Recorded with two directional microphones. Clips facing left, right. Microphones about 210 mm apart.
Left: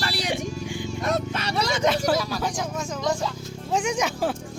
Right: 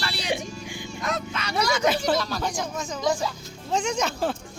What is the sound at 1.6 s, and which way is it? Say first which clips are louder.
Speech: right 1 dB; 25° left (ahead or behind).